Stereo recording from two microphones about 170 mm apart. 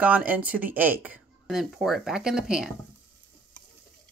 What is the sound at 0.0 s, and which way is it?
Speech, 10° right (ahead or behind).